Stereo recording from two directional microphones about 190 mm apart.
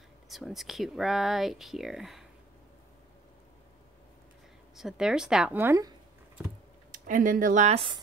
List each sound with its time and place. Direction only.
0.3 s speech: centre (ahead or behind)
4.7 s speech: 5° right (ahead or behind)
6.9 s speech: 45° right (ahead or behind); by 8.0 s 30° right (ahead or behind)